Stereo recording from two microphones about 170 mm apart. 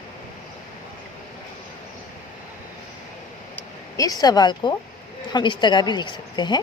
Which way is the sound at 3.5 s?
20° left (ahead or behind).